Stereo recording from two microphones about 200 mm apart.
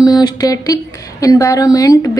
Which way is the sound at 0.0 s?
20° left (ahead or behind).